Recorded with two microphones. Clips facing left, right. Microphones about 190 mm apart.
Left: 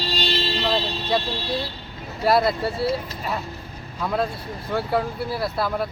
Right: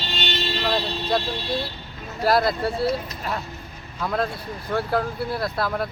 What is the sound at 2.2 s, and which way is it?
Speech, centre (ahead or behind).